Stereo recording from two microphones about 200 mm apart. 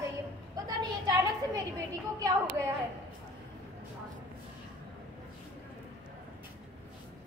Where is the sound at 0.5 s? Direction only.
20° right (ahead or behind).